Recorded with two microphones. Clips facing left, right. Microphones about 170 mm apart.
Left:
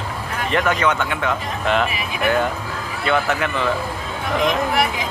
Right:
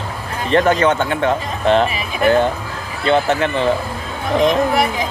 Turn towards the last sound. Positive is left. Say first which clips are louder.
# right 4 dB
turn(degrees=-30)  # may be behind; listen again after turning